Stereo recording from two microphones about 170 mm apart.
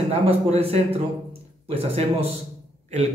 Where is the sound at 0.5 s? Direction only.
35° right (ahead or behind).